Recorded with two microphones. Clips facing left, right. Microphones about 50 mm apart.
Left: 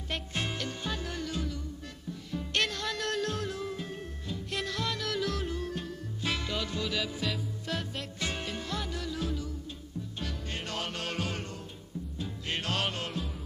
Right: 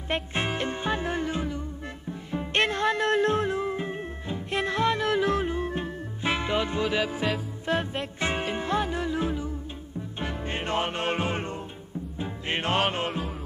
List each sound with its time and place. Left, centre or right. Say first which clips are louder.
0.1 s music: right 7 dB; right